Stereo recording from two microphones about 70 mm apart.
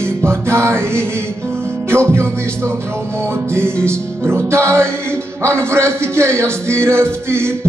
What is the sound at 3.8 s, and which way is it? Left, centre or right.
Music, right.